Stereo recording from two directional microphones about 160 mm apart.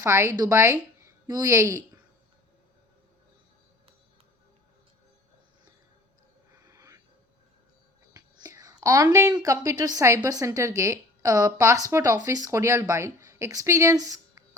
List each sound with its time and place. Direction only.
0.0 s a woman's voice: 15° right (ahead or behind)
6.7 s a sound: 20° right (ahead or behind)
8.1 s speech: 20° right (ahead or behind)